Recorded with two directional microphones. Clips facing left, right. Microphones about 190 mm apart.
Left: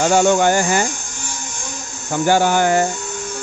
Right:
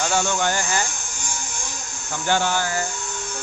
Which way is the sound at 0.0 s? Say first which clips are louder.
Left 9 dB; 45° left (ahead or behind).